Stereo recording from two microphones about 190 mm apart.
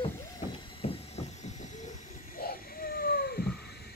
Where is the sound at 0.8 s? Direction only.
30° left (ahead or behind).